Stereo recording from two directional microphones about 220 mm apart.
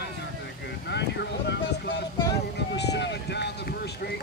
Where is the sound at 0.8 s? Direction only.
50° left (ahead or behind).